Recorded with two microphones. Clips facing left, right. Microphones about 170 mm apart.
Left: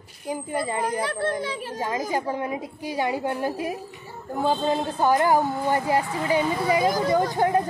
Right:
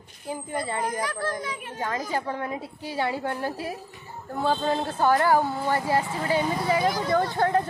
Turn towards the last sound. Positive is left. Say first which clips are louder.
# left 2 dB
turn(degrees=15)  # may be behind; listen again after turning